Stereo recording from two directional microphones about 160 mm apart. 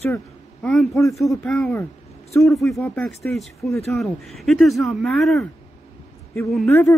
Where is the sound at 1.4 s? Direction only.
5° left (ahead or behind).